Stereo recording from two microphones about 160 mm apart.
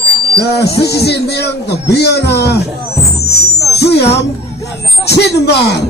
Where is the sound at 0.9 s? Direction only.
90° left.